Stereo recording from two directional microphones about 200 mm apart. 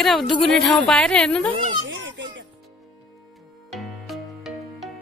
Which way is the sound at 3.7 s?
Centre (ahead or behind).